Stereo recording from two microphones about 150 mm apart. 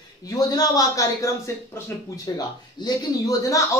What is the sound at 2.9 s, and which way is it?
Speech, 25° left (ahead or behind).